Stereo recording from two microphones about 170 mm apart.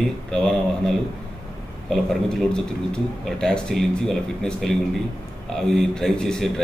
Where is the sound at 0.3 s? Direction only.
5° left (ahead or behind).